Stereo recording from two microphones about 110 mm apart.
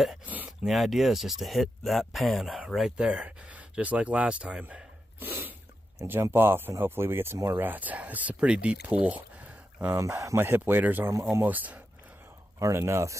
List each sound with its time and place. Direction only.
0.2 s speech: 15° right (ahead or behind)
0.5 s speech: centre (ahead or behind)
5.2 s sneeze: 20° right (ahead or behind)
6.3 s speech: 20° right (ahead or behind)
9.9 s speech: 30° right (ahead or behind)
12.5 s speech: 25° right (ahead or behind)